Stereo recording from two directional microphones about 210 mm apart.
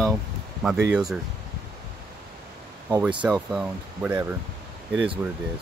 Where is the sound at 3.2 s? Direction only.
5° right (ahead or behind).